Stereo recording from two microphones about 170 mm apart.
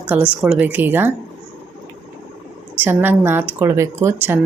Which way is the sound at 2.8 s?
10° right (ahead or behind).